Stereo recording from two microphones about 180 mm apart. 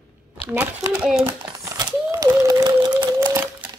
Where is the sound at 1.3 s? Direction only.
15° right (ahead or behind).